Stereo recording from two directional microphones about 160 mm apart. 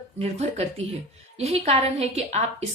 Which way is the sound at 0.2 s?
40° right (ahead or behind).